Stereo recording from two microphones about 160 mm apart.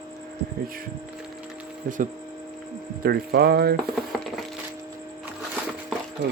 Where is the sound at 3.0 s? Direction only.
75° right (ahead or behind).